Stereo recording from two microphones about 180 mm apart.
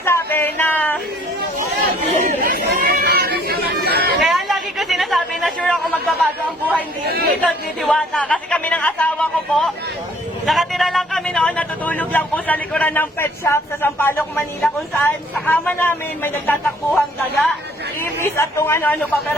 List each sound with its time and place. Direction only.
0.0 s a sound: 15° left (ahead or behind)
1.5 s chatter: 50° right (ahead or behind)
4.2 s chatter: centre (ahead or behind)
7.0 s speech: 60° right (ahead or behind)
7.4 s a man's voice: centre (ahead or behind)
14.3 s a man's voice: centre (ahead or behind)
18.0 s speech: 15° left (ahead or behind)